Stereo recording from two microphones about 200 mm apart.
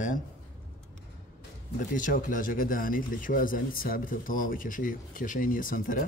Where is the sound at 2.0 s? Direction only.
40° left (ahead or behind).